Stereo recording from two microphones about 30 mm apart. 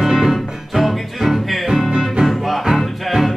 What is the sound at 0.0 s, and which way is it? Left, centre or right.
Music, centre.